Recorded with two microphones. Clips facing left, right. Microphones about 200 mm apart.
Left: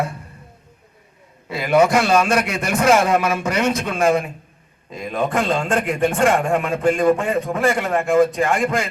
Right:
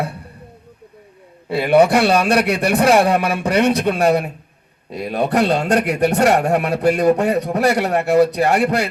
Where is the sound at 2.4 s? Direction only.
65° right (ahead or behind).